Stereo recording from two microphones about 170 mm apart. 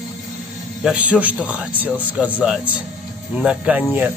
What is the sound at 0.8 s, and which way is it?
Speech, 10° right (ahead or behind).